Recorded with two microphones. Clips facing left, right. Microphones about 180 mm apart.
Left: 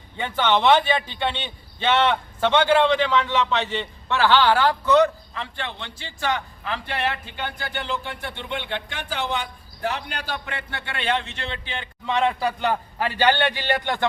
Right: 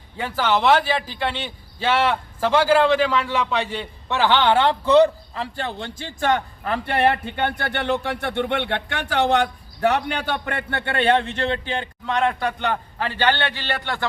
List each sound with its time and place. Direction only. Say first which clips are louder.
0.2 s a man's voice: even; 5° right (ahead or behind); by 11.9 s 40° right (ahead or behind)
12.0 s a man's voice: even; centre (ahead or behind); by 14.1 s 20° left (ahead or behind)